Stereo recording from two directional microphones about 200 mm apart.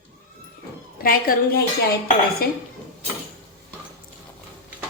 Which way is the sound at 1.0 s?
45° left (ahead or behind).